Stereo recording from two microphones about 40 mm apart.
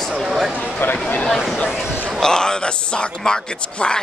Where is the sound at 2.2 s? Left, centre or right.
Centre.